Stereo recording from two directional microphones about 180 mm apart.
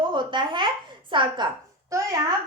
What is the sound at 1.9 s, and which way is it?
Speech, 15° right (ahead or behind).